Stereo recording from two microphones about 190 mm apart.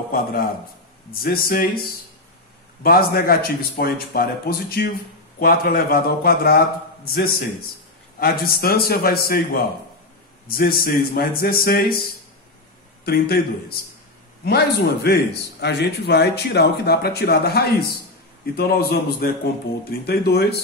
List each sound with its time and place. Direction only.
0.1 s a man's voice: 50° left (ahead or behind)
2.8 s a man's voice: 50° left (ahead or behind)
13.0 s a man's voice: 55° left (ahead or behind)
14.4 s speech: 55° left (ahead or behind)